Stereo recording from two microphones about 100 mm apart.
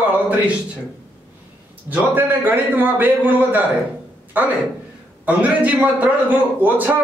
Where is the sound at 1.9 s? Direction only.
20° right (ahead or behind).